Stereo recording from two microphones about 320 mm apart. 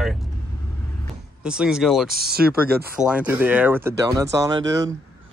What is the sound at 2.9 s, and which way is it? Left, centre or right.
Speech, centre.